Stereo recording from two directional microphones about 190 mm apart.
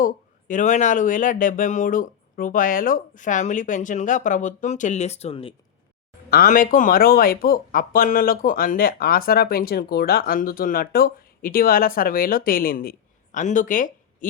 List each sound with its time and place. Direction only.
0.0 s speech: 45° left (ahead or behind)
6.3 s speech: 45° left (ahead or behind)